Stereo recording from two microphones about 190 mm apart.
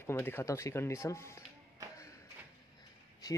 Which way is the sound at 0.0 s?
10° left (ahead or behind).